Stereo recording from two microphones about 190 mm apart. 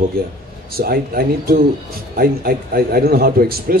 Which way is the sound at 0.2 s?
50° right (ahead or behind).